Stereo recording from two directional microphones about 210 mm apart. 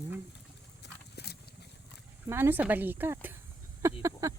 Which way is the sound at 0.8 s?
50° left (ahead or behind).